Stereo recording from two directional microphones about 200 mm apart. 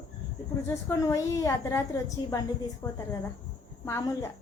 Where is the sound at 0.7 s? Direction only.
15° left (ahead or behind).